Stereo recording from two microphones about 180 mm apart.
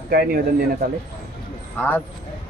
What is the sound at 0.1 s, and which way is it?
Speech, 60° right (ahead or behind).